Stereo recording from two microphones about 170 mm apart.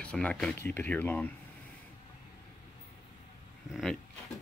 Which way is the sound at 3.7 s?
Centre (ahead or behind).